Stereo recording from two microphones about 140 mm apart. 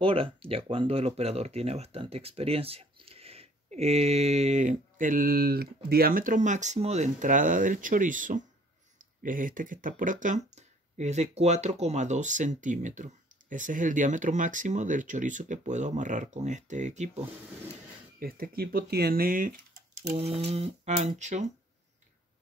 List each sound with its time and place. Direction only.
0.0 s speech: 40° right (ahead or behind)
18.2 s speech: 90° right; by 20.2 s 75° right (ahead or behind)
20.2 s speech: 45° right (ahead or behind)